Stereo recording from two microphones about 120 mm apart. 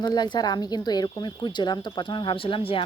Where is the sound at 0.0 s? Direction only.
35° left (ahead or behind).